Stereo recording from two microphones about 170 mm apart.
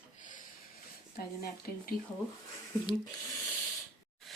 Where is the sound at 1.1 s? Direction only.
65° left (ahead or behind).